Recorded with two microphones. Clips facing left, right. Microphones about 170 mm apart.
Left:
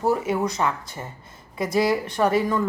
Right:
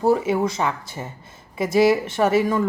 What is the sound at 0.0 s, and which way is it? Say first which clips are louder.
Speech: right 3 dB; 25° right (ahead or behind).